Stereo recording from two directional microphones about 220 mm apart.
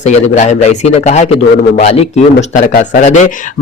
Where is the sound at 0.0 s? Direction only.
30° left (ahead or behind).